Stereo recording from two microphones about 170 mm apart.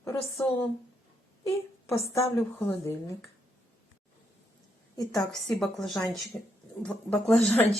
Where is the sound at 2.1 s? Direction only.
15° left (ahead or behind).